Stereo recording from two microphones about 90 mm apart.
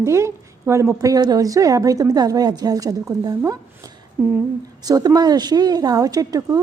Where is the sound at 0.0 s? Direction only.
30° right (ahead or behind).